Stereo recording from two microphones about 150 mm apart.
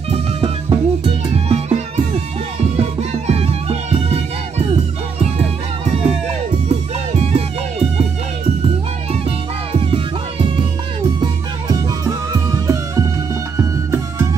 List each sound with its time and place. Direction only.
0.1 s music: 35° right (ahead or behind)
9.7 s music: 35° right (ahead or behind); by 14.2 s 20° right (ahead or behind)